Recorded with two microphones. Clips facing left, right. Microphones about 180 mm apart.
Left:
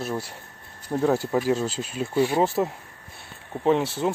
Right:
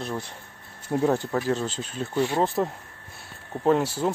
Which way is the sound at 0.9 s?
5° right (ahead or behind).